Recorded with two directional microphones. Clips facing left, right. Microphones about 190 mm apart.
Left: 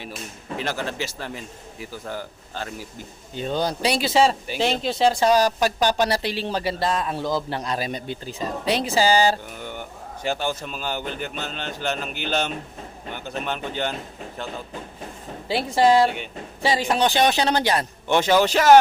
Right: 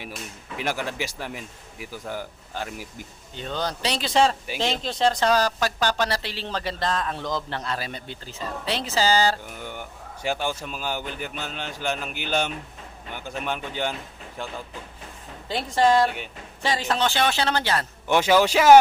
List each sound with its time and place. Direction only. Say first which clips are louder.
0.5 s a man's voice: left 1 dB; 15° right (ahead or behind)
3.3 s speech: left 5 dB; 10° left (ahead or behind)
10.2 s a man's voice: left 1 dB; 10° right (ahead or behind)
15.4 s speech: left 2 dB; 10° left (ahead or behind)
18.1 s a man's voice: even; 10° right (ahead or behind)